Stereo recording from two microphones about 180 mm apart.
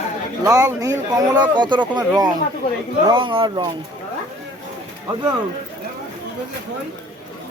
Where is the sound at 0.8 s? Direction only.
20° right (ahead or behind).